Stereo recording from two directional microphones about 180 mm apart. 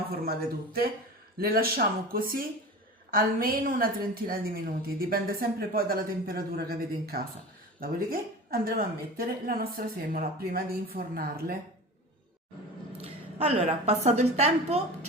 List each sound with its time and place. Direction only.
0.1 s a woman's voice: 55° right (ahead or behind)
13.0 s a woman's voice: 35° right (ahead or behind)